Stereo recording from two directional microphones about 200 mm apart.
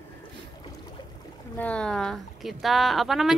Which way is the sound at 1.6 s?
5° left (ahead or behind).